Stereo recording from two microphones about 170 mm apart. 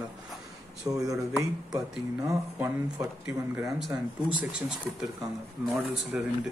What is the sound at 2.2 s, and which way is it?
Speech, 20° right (ahead or behind).